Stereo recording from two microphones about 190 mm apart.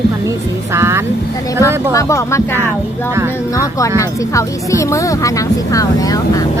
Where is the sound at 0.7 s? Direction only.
15° right (ahead or behind).